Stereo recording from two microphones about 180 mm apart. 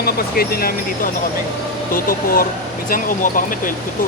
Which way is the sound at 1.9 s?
55° left (ahead or behind).